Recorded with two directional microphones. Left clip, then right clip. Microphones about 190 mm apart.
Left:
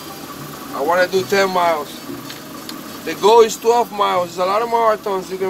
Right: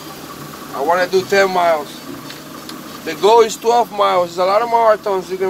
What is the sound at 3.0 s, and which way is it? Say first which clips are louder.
Speech: even; 25° right (ahead or behind).